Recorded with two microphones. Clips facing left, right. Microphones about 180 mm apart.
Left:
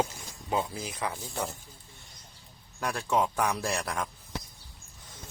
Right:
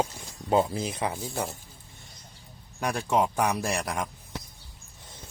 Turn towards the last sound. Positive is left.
turn(degrees=-20)  # may be behind; listen again after turning